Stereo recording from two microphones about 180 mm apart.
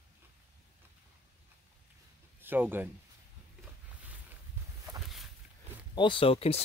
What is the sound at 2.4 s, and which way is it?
Speech, 10° right (ahead or behind).